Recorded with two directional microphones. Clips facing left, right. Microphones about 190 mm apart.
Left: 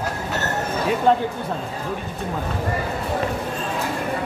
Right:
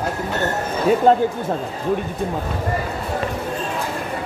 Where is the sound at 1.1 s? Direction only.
40° right (ahead or behind).